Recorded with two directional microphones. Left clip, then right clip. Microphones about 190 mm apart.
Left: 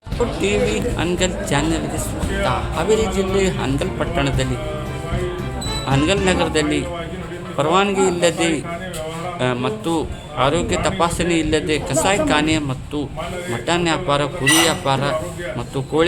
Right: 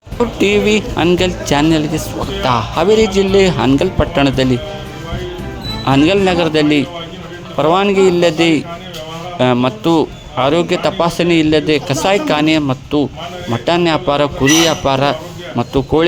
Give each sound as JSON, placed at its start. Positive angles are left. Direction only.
{"t": 0.4, "sound": "speech", "side_deg": -50}
{"t": 6.1, "sound": "speech", "side_deg": -50}